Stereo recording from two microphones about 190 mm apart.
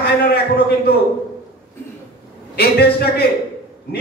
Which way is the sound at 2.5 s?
55° left (ahead or behind).